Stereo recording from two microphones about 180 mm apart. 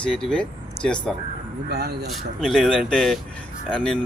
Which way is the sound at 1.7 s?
60° right (ahead or behind).